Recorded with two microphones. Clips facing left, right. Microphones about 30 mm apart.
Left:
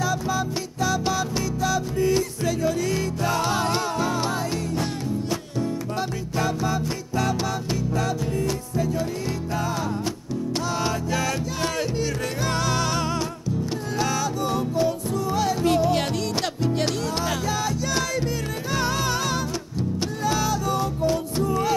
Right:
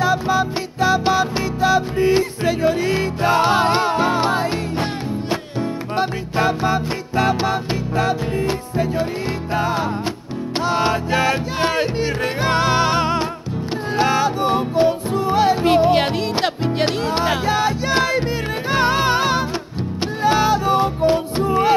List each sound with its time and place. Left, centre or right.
0.0 s music: right